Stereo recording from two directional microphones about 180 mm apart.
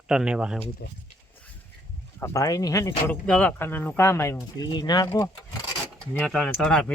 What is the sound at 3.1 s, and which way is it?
Speech, 5° left (ahead or behind).